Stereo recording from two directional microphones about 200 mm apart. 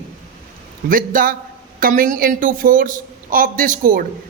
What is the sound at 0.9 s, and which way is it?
Speech, 45° right (ahead or behind).